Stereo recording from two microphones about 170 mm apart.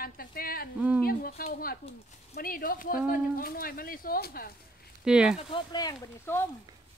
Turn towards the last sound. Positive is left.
turn(degrees=15)  # may be behind; listen again after turning